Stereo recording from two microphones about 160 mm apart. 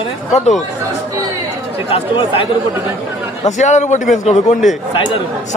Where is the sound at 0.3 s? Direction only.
45° left (ahead or behind).